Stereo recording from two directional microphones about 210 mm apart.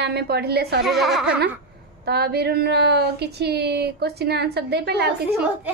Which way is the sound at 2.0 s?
50° right (ahead or behind).